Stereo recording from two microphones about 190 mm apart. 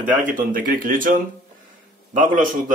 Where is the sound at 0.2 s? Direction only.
45° right (ahead or behind).